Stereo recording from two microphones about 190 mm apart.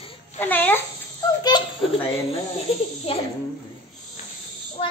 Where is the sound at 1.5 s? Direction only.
25° left (ahead or behind).